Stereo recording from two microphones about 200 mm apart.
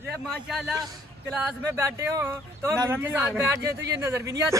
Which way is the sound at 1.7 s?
10° right (ahead or behind).